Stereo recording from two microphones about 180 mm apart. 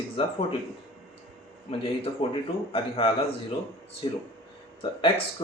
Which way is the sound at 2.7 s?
30° left (ahead or behind).